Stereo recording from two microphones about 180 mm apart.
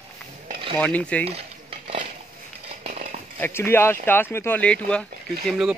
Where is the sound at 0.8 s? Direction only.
5° left (ahead or behind).